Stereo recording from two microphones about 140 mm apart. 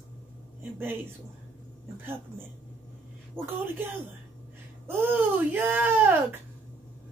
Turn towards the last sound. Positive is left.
turn(degrees=-15)  # may be behind; listen again after turning